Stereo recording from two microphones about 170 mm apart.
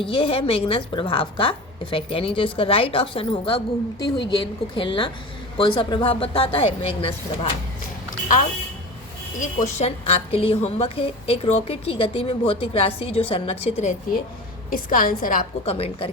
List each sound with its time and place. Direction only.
0.0 s a woman's voice: 30° left (ahead or behind)
9.4 s a woman's voice: 45° left (ahead or behind)
14.7 s a woman's voice: 55° left (ahead or behind)
15.6 s a woman's voice: 35° left (ahead or behind)